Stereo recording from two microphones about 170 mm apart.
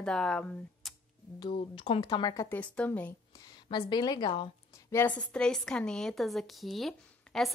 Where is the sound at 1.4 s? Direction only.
30° left (ahead or behind).